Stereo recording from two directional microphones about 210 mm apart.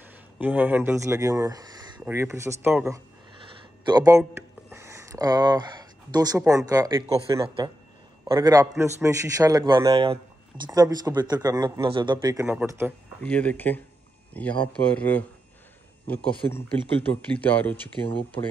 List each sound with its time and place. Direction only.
0.0 s a man's voice: 10° right (ahead or behind)
13.2 s speech: 5° left (ahead or behind)
16.4 s speech: 10° left (ahead or behind)